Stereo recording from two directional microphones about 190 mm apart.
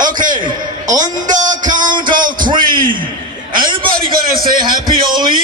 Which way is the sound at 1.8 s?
25° right (ahead or behind).